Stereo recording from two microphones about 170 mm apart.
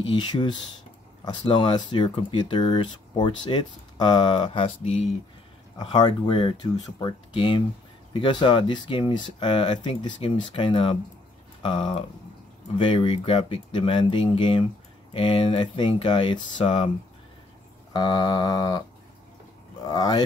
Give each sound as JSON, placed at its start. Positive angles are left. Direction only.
{"t": 0.0, "sound": "speech", "side_deg": 30}
{"t": 4.6, "sound": "speech", "side_deg": 40}
{"t": 5.8, "sound": "speech", "side_deg": 25}
{"t": 17.9, "sound": "speech", "side_deg": 25}
{"t": 19.8, "sound": "speech", "side_deg": 25}